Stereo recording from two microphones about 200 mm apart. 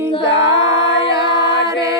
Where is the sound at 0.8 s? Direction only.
60° left (ahead or behind).